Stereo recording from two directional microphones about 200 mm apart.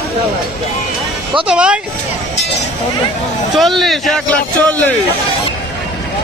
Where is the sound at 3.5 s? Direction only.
Centre (ahead or behind).